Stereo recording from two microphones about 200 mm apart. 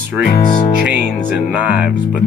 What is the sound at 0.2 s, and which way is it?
Speech, 40° left (ahead or behind).